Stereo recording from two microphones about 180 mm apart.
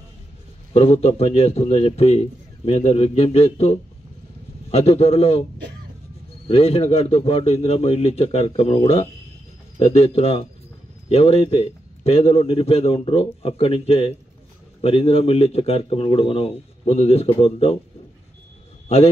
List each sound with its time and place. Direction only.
0.7 s a man's voice: 35° left (ahead or behind)
6.4 s a man's voice: 30° left (ahead or behind)